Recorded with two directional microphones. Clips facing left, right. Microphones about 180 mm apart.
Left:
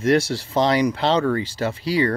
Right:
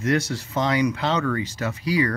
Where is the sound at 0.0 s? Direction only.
30° left (ahead or behind).